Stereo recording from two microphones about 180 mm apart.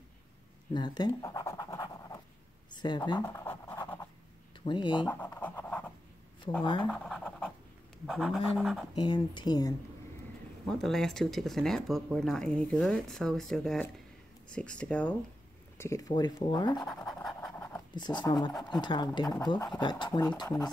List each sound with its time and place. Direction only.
0.7 s scratch: 25° left (ahead or behind)
2.7 s speech: 25° left (ahead or behind)
3.2 s scratch: 15° left (ahead or behind)
4.6 s speech: 25° left (ahead or behind)
5.0 s speech: 10° left (ahead or behind)
5.4 s writing: 10° left (ahead or behind)
6.8 s scratch: 5° left (ahead or behind)
8.1 s speech: centre (ahead or behind)
8.9 s speech: 25° left (ahead or behind)
10.7 s speech: 5° left (ahead or behind)
15.8 s speech: 15° left (ahead or behind)
17.1 s pant: centre (ahead or behind)
17.6 s writing: 20° left (ahead or behind)
18.6 s speech: 25° left (ahead or behind)